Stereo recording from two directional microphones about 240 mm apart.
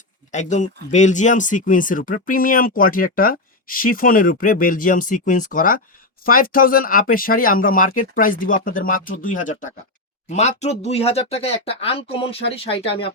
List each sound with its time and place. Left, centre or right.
0.3 s speech: left